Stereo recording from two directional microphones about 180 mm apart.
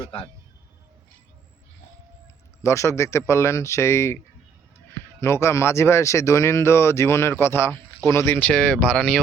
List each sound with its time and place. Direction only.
0.0 s speech: 30° left (ahead or behind)
2.6 s speech: 15° left (ahead or behind)
5.2 s speech: 15° left (ahead or behind)